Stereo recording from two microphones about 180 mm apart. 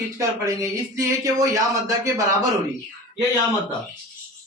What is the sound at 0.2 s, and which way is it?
Speech, 15° right (ahead or behind).